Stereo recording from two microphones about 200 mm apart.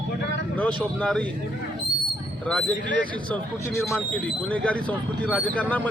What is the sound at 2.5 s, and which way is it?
A man's voice, 5° left (ahead or behind).